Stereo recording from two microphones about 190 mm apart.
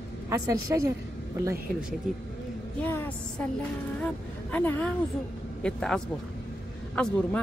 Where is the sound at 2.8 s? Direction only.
10° left (ahead or behind).